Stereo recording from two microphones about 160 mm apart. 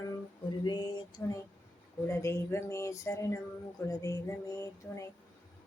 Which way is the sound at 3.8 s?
20° left (ahead or behind).